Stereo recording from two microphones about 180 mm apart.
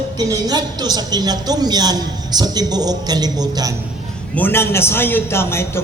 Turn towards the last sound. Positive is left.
turn(degrees=15)  # may be behind; listen again after turning